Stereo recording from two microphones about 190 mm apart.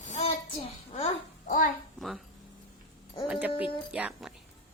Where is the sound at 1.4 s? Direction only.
45° left (ahead or behind).